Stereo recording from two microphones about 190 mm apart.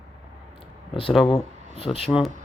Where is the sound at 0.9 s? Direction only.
30° left (ahead or behind).